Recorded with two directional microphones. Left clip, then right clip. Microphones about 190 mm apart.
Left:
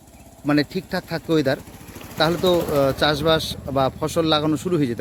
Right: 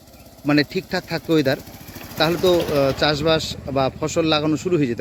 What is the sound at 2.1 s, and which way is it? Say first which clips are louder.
Speech: right 1 dB; 5° left (ahead or behind).